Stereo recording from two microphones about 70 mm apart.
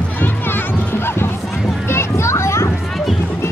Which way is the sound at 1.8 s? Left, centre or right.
Left.